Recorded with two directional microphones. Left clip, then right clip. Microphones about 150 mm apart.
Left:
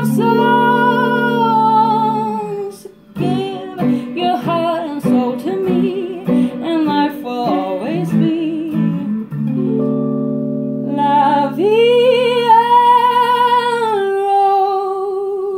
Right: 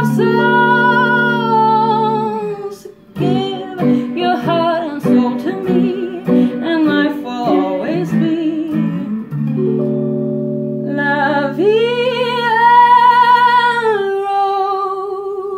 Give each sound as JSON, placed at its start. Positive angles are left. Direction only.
{"t": 0.0, "sound": "music", "side_deg": 30}
{"t": 11.0, "sound": "music", "side_deg": 25}